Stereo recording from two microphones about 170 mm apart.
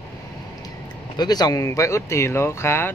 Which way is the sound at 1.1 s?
25° left (ahead or behind).